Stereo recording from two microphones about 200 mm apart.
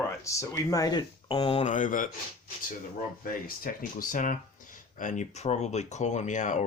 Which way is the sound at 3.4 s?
45° left (ahead or behind).